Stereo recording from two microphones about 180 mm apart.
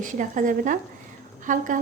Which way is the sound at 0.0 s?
45° right (ahead or behind).